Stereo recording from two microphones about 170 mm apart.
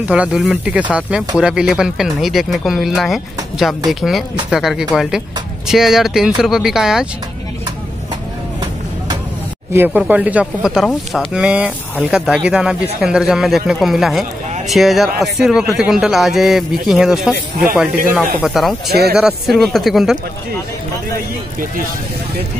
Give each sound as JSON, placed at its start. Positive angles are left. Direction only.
{"t": 0.1, "sound": "speech", "side_deg": -5}
{"t": 9.7, "sound": "speech", "side_deg": -10}
{"t": 18.9, "sound": "speech", "side_deg": -70}
{"t": 19.1, "sound": "speech", "side_deg": -5}